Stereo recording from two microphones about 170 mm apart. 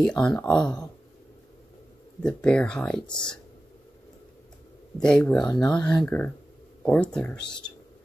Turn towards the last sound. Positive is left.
turn(degrees=25)  # may be behind; listen again after turning